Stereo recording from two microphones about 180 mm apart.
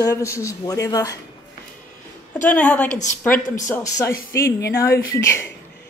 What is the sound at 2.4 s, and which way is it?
A woman's voice, 5° left (ahead or behind).